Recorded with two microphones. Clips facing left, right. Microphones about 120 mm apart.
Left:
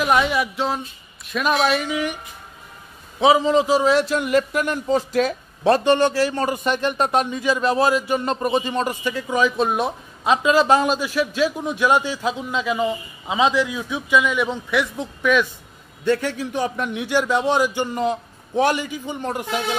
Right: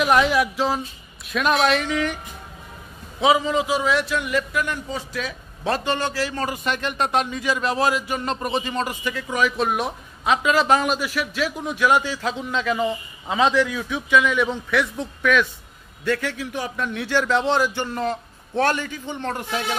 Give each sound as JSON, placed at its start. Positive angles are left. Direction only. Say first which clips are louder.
{"t": 0.0, "sound": "speech", "louder": "right 1 dB", "side_deg": 0}
{"t": 3.2, "sound": "a man's voice", "louder": "left 3 dB", "side_deg": 30}
{"t": 5.6, "sound": "a woman's voice", "louder": "left 7 dB", "side_deg": 25}
{"t": 16.2, "sound": "speech", "louder": "left 4 dB", "side_deg": 30}